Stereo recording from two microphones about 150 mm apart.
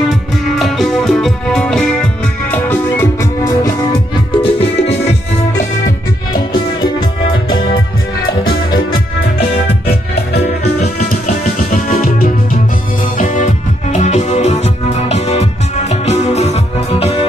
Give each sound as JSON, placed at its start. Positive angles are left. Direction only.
{"t": 0.6, "sound": "music", "side_deg": 0}
{"t": 4.4, "sound": "music", "side_deg": 45}
{"t": 8.5, "sound": "music", "side_deg": 30}
{"t": 9.7, "sound": "music", "side_deg": 90}
{"t": 11.7, "sound": "music", "side_deg": 75}
{"t": 13.2, "sound": "music", "side_deg": 55}